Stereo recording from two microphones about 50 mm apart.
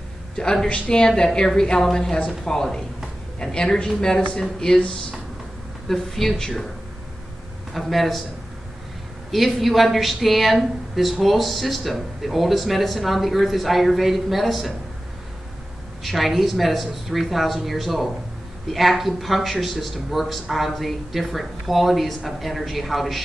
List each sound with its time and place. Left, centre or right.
0.4 s a woman's voice: centre
4.2 s a woman's voice: left
5.9 s a man's voice: centre
7.7 s a man's voice: centre
9.3 s a man's voice: centre
16.0 s a man's voice: centre